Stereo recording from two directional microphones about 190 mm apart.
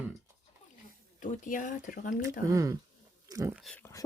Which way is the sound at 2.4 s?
15° right (ahead or behind).